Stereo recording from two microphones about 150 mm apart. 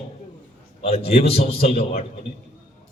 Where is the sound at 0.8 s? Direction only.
40° left (ahead or behind).